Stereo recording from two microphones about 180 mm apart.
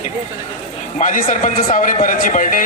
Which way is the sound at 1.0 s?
50° left (ahead or behind).